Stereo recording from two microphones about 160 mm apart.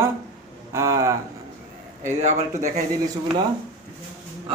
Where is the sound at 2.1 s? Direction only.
45° right (ahead or behind).